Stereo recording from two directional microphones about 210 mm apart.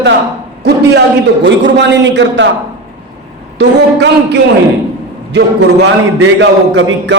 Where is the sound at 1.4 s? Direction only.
55° right (ahead or behind).